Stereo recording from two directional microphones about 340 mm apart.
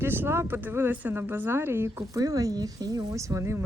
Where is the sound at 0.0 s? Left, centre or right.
Centre.